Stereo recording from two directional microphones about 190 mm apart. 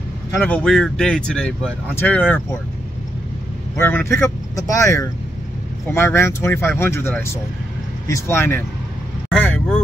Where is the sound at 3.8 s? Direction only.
10° left (ahead or behind).